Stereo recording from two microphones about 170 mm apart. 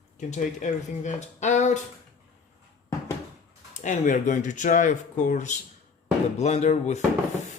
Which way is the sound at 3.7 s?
45° left (ahead or behind).